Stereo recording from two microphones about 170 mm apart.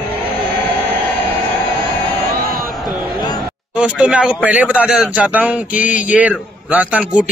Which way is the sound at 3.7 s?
5° right (ahead or behind).